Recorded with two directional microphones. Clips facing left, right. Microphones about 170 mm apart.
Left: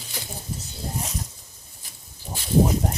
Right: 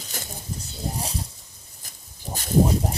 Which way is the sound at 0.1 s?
45° right (ahead or behind).